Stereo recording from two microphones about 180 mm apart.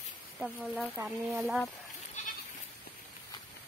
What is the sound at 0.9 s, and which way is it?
Speech, 10° right (ahead or behind).